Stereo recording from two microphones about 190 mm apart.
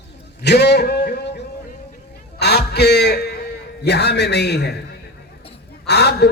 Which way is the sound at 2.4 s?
60° left (ahead or behind).